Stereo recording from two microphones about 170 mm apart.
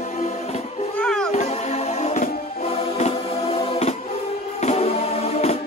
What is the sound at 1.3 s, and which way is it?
Music, 40° left (ahead or behind).